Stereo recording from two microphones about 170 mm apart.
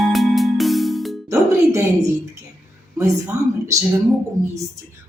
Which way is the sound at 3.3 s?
15° right (ahead or behind).